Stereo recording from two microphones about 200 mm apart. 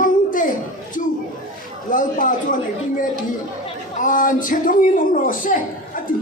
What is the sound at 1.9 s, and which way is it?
Speech, 40° left (ahead or behind).